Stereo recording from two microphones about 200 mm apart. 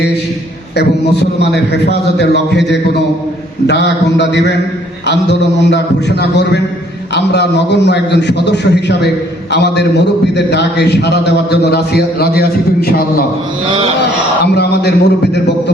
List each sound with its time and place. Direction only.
0.8 s a man's voice: 55° left (ahead or behind)
14.4 s a man's voice: 55° left (ahead or behind)